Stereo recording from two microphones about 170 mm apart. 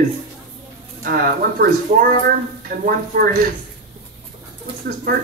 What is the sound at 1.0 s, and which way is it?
Speech, 60° right (ahead or behind).